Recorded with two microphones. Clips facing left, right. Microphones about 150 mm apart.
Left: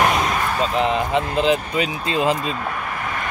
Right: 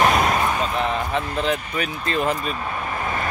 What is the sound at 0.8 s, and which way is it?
Speech, 20° left (ahead or behind).